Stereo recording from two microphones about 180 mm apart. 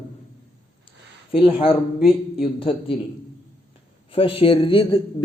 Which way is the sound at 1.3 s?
30° left (ahead or behind).